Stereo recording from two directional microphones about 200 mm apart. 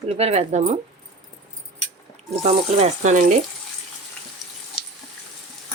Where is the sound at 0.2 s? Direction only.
30° right (ahead or behind).